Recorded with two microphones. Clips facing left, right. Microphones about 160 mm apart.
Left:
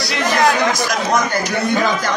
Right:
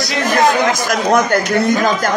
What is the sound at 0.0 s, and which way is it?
Speech, 50° right (ahead or behind).